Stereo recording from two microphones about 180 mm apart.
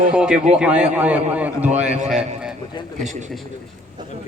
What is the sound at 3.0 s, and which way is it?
Speech, 40° right (ahead or behind).